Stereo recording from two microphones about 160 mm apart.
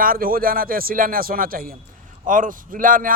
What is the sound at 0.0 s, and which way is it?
A man's voice, 65° right (ahead or behind).